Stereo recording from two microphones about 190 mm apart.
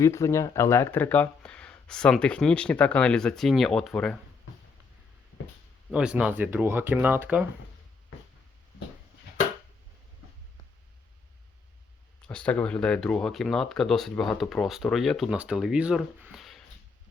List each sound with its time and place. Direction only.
0.0 s speech: 15° left (ahead or behind)
5.9 s speech: 5° right (ahead or behind)
12.3 s speech: 5° left (ahead or behind)